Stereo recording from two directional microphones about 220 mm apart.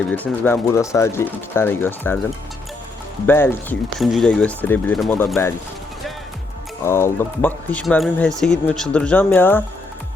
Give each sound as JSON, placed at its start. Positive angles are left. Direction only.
{"t": 0.4, "sound": "speech", "side_deg": 10}
{"t": 3.2, "sound": "speech", "side_deg": 10}
{"t": 6.8, "sound": "speech", "side_deg": 10}